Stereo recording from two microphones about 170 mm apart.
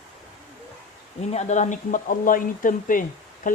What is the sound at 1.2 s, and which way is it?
Speech, 40° left (ahead or behind).